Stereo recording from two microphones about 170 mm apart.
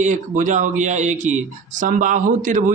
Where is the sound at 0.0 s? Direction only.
45° right (ahead or behind).